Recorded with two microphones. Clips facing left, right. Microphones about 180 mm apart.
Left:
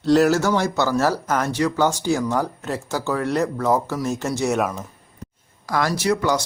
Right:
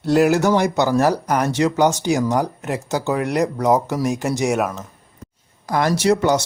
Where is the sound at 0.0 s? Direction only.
10° right (ahead or behind).